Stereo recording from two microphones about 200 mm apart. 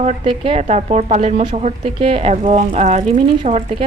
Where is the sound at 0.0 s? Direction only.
30° right (ahead or behind).